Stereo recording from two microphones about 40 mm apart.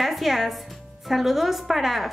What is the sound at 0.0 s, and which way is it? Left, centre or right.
A woman's voice, centre.